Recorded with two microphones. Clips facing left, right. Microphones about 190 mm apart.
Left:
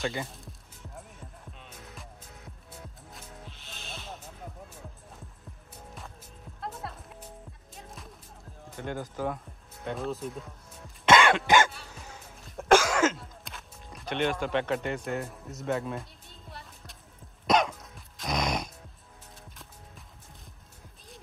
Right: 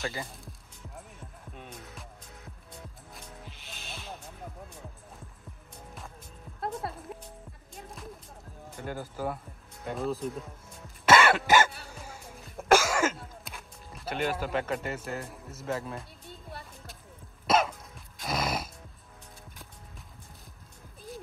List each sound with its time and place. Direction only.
0.0 s speech: centre (ahead or behind)
3.1 s music: centre (ahead or behind)
8.7 s speech: 5° right (ahead or behind)
11.1 s cough: 5° right (ahead or behind)
17.5 s music: centre (ahead or behind)